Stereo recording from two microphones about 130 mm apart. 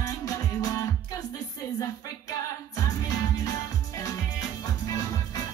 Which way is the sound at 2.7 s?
30° left (ahead or behind).